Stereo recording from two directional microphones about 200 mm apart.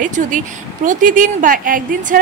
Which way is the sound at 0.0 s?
40° right (ahead or behind).